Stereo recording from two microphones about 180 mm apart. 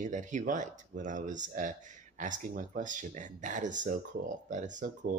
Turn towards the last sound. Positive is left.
turn(degrees=-45)  # may be behind; listen again after turning